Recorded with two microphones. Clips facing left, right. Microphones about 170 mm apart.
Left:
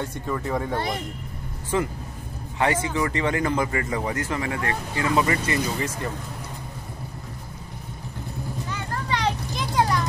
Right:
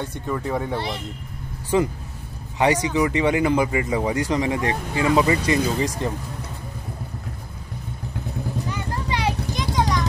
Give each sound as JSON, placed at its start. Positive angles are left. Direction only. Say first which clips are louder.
{"t": 0.4, "sound": "speech", "louder": "right 1 dB", "side_deg": -10}
{"t": 0.7, "sound": "speech", "louder": "left 1 dB", "side_deg": 50}
{"t": 1.7, "sound": "speech", "louder": "right 4 dB", "side_deg": -15}
{"t": 8.6, "sound": "vehicle", "louder": "right 2 dB", "side_deg": -15}
{"t": 9.6, "sound": "vehicle", "louder": "even", "side_deg": 5}